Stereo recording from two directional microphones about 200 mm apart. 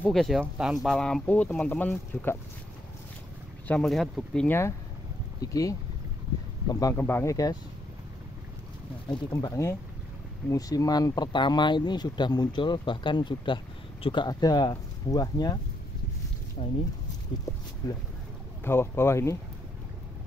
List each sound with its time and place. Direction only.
0.0 s speech: centre (ahead or behind)
3.6 s speech: 5° left (ahead or behind)
9.1 s speech: 20° left (ahead or behind)
16.6 s speech: 30° left (ahead or behind)
18.6 s speech: 10° left (ahead or behind)